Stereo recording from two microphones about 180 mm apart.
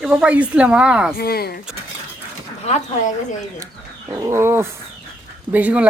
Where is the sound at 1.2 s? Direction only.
60° left (ahead or behind).